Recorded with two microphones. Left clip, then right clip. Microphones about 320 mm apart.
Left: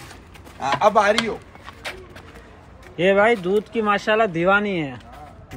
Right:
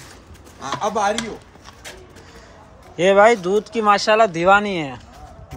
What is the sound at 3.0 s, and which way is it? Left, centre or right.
Speech, centre.